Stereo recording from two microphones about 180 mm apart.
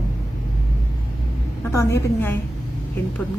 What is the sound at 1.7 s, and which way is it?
Speech, 15° left (ahead or behind).